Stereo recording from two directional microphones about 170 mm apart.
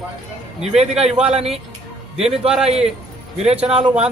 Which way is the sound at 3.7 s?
35° right (ahead or behind).